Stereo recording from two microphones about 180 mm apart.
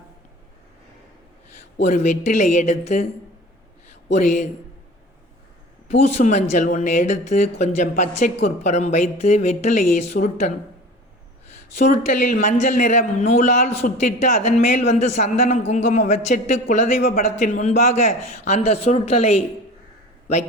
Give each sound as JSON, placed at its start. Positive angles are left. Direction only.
{"t": 1.8, "sound": "a man's voice", "side_deg": 40}
{"t": 4.1, "sound": "a man's voice", "side_deg": 40}
{"t": 5.9, "sound": "a man's voice", "side_deg": 35}
{"t": 11.8, "sound": "a man's voice", "side_deg": 40}